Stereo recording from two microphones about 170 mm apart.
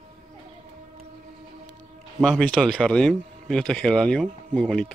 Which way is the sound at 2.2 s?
5° left (ahead or behind).